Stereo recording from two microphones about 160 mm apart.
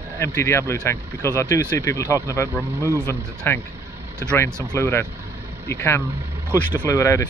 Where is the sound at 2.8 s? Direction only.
15° right (ahead or behind).